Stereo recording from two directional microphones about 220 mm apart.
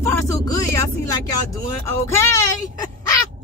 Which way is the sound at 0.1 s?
15° left (ahead or behind).